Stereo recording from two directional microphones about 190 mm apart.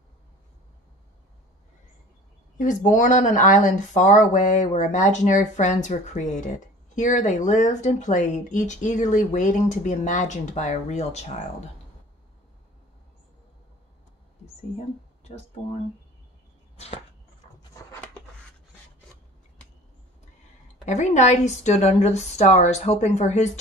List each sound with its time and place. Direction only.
2.5 s speech: 40° left (ahead or behind)
16.7 s arrow: 35° left (ahead or behind)
17.8 s a sound: 15° left (ahead or behind)
20.8 s speech: 40° left (ahead or behind)